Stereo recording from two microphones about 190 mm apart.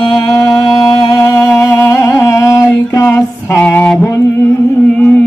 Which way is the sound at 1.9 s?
15° left (ahead or behind).